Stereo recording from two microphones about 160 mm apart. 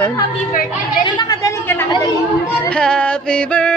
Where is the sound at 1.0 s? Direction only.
25° left (ahead or behind).